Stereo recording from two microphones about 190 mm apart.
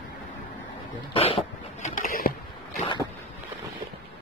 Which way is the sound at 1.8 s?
45° left (ahead or behind).